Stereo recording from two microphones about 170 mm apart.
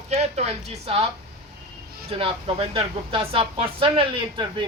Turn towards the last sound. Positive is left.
turn(degrees=-30)  # may be behind; listen again after turning